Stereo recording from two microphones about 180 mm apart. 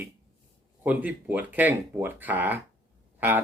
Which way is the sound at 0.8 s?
10° right (ahead or behind).